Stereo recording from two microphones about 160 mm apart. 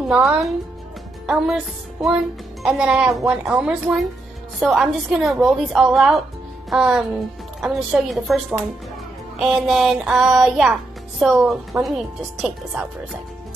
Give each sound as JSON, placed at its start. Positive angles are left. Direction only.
{"t": 0.1, "sound": "a woman's voice", "side_deg": -5}
{"t": 11.7, "sound": "speech", "side_deg": -15}
{"t": 12.4, "sound": "a woman's voice", "side_deg": 0}